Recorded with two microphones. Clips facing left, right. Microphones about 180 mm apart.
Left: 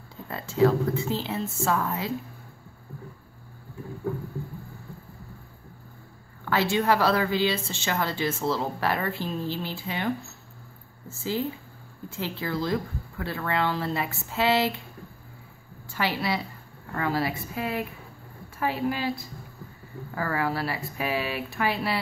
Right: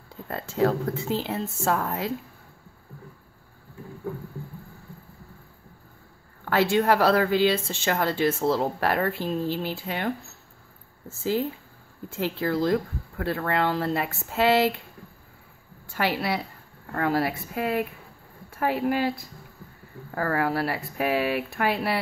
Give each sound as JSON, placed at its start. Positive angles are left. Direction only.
{"t": 0.3, "sound": "speech", "side_deg": -50}
{"t": 6.4, "sound": "speech", "side_deg": -50}
{"t": 12.2, "sound": "speech", "side_deg": -50}
{"t": 15.9, "sound": "speech", "side_deg": -55}
{"t": 20.2, "sound": "speech", "side_deg": -55}